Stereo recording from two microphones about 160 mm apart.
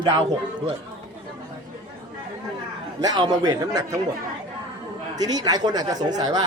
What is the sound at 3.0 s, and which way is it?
Speech, 25° right (ahead or behind).